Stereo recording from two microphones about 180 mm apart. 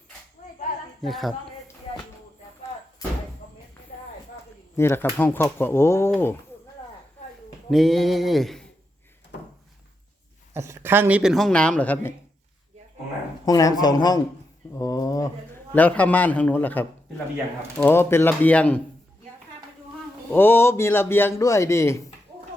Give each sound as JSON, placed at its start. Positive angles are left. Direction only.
{"t": 0.4, "sound": "a sound", "side_deg": 45}
{"t": 1.0, "sound": "speech", "side_deg": 0}
{"t": 4.8, "sound": "a man's voice", "side_deg": 15}
{"t": 7.7, "sound": "speech", "side_deg": 0}
{"t": 10.5, "sound": "speech", "side_deg": -15}
{"t": 13.4, "sound": "speech", "side_deg": 20}
{"t": 14.7, "sound": "a sound", "side_deg": 20}
{"t": 15.7, "sound": "a man's voice", "side_deg": 10}
{"t": 20.3, "sound": "a man's voice", "side_deg": 10}